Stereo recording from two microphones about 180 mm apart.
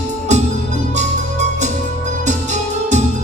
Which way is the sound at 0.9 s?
40° right (ahead or behind).